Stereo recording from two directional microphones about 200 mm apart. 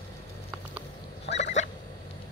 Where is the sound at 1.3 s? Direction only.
35° left (ahead or behind).